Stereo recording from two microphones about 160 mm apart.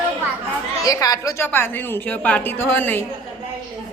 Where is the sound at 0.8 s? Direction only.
20° left (ahead or behind).